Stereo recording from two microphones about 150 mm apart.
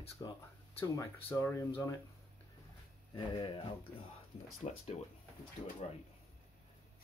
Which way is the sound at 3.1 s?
35° left (ahead or behind).